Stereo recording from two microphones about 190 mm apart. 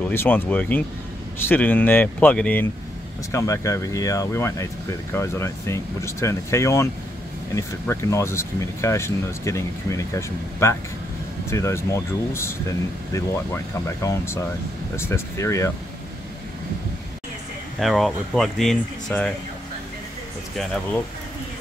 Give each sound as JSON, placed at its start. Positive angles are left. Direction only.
{"t": 0.0, "sound": "speech", "side_deg": 10}
{"t": 17.7, "sound": "speech", "side_deg": 0}